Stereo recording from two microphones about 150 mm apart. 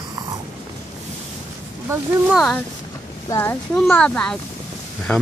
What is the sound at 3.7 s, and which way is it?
Speech, 5° left (ahead or behind).